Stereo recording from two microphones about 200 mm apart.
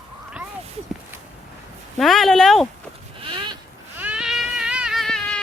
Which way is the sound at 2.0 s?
Centre (ahead or behind).